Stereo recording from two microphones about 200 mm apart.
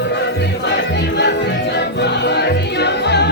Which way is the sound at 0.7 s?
60° left (ahead or behind).